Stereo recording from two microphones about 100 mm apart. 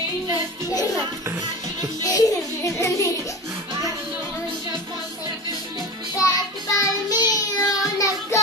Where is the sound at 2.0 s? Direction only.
35° left (ahead or behind).